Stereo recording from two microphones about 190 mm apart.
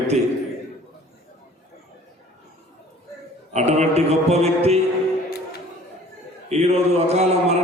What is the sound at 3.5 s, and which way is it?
A man's voice, 35° right (ahead or behind).